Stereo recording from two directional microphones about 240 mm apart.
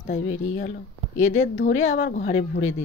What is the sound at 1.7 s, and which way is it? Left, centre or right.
Speech, left.